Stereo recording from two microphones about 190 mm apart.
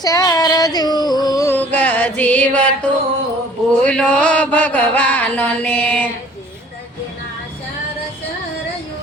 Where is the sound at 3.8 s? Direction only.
5° left (ahead or behind).